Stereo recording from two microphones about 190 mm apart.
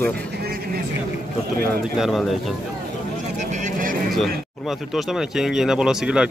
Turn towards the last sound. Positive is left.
turn(degrees=-5)  # may be behind; listen again after turning